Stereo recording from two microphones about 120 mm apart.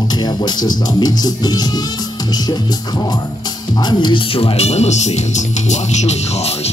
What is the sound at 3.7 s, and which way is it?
Speech, 40° left (ahead or behind).